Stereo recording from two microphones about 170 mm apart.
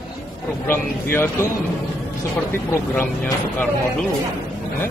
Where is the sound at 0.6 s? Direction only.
10° left (ahead or behind).